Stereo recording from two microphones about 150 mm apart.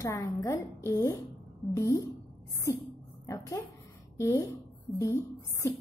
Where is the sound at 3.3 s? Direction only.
20° left (ahead or behind).